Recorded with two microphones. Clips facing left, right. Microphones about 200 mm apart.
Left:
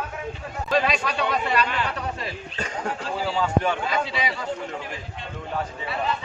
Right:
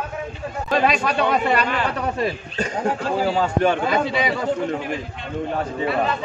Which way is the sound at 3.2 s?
55° right (ahead or behind).